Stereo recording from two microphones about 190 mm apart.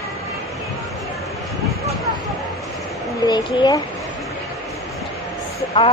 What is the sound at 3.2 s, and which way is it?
Speech, 20° left (ahead or behind).